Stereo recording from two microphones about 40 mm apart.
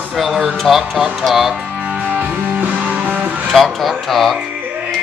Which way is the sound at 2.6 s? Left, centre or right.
Right.